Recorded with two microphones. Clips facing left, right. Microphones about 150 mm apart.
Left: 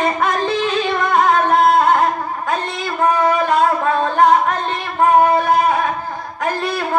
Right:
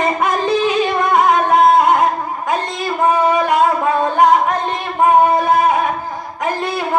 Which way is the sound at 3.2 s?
20° right (ahead or behind).